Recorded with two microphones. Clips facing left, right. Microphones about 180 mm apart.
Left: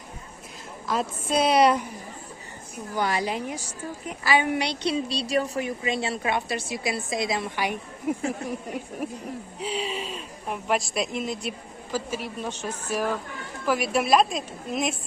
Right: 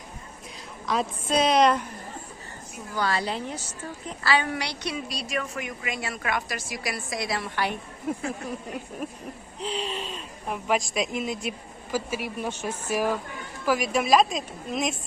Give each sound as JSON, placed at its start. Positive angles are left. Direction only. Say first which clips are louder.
{"t": 0.9, "sound": "a woman's voice", "louder": "even", "side_deg": 5}
{"t": 2.9, "sound": "a woman's voice", "louder": "left 1 dB", "side_deg": 15}
{"t": 13.7, "sound": "speech", "louder": "even", "side_deg": 5}